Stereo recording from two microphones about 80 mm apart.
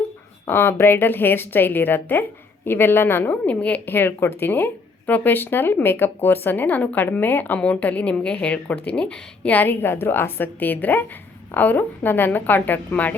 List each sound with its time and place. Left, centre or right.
0.4 s a woman's voice: left